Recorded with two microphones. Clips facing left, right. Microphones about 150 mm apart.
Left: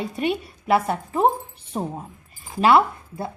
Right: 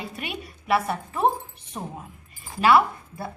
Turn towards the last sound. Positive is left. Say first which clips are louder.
# left 3 dB
turn(degrees=25)  # may be behind; listen again after turning